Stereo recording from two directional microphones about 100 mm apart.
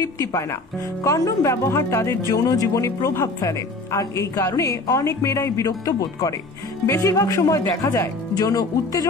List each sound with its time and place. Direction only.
0.0 s speech: 30° left (ahead or behind)